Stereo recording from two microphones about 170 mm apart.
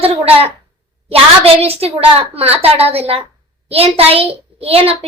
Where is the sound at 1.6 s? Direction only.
35° right (ahead or behind).